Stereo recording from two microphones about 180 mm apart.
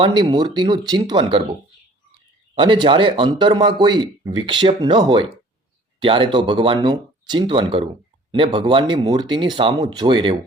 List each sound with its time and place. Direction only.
0.0 s speech: 25° right (ahead or behind)
2.6 s speech: 25° right (ahead or behind)